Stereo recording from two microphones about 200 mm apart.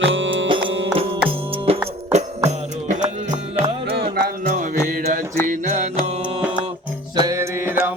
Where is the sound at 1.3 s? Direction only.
25° right (ahead or behind).